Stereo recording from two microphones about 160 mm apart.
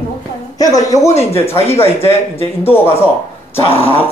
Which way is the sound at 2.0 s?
15° left (ahead or behind).